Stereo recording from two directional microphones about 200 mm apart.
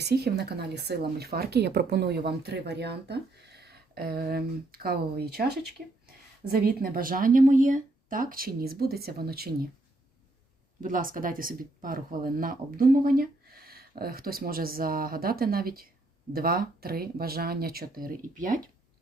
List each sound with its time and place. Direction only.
0.0 s speech: 55° right (ahead or behind)
10.8 s speech: 45° right (ahead or behind)